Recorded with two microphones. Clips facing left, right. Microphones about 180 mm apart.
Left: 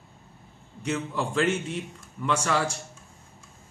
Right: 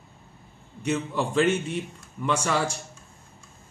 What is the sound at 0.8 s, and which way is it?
A man's voice, 20° right (ahead or behind).